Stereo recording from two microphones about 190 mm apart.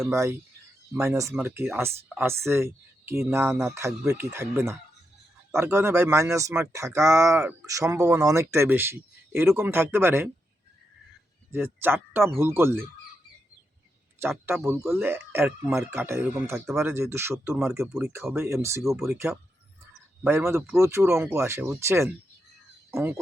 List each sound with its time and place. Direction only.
0.1 s speech: 15° right (ahead or behind)
11.5 s speech: 10° right (ahead or behind)
14.2 s speech: 10° right (ahead or behind)
18.8 s speech: centre (ahead or behind)
19.0 s speech: 15° right (ahead or behind)